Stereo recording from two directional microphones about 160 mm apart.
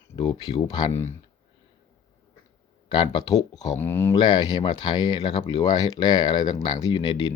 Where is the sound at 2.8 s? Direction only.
25° left (ahead or behind).